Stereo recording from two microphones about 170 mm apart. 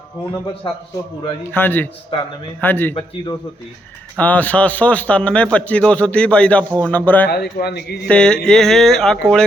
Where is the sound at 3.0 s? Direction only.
25° left (ahead or behind).